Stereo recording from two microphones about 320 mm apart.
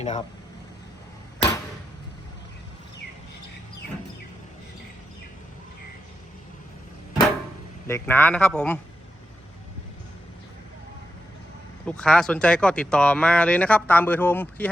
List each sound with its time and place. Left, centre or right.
0.0 s speech: left
7.9 s speech: centre
11.9 s speech: centre